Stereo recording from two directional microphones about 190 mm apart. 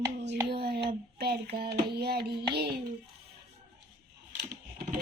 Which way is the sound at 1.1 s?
55° right (ahead or behind).